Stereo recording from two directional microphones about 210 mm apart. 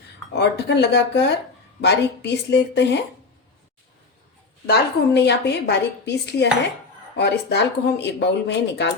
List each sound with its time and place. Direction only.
0.3 s a woman's voice: 55° left (ahead or behind)
4.6 s a woman's voice: 50° left (ahead or behind)